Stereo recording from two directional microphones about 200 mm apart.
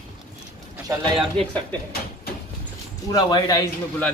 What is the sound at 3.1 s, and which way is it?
Speech, 20° left (ahead or behind).